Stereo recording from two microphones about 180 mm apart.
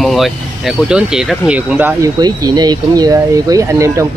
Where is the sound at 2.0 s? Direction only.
20° right (ahead or behind).